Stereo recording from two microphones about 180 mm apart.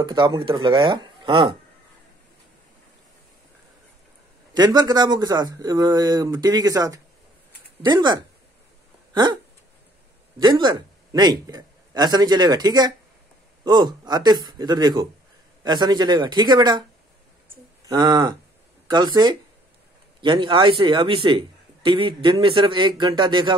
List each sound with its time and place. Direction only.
0.0 s speech: 25° right (ahead or behind)
4.6 s speech: 25° right (ahead or behind)
10.4 s speech: 25° right (ahead or behind)
17.8 s speech: 20° right (ahead or behind)